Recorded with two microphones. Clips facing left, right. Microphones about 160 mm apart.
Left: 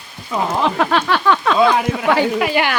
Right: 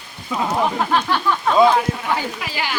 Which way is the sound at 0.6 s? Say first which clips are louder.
Left 3 dB; 90° left.